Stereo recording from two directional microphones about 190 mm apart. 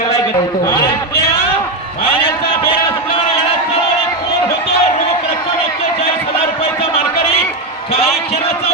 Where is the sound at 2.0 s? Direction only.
30° left (ahead or behind).